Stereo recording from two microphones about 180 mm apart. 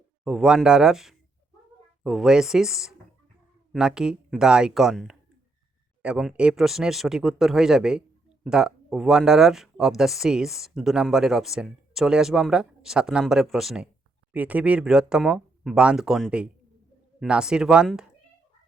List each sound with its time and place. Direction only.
0.3 s speech: 5° right (ahead or behind)